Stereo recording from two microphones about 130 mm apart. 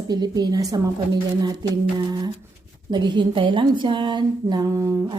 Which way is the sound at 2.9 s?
35° right (ahead or behind).